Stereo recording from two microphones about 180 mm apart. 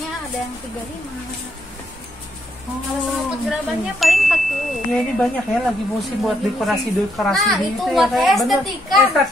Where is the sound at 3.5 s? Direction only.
Centre (ahead or behind).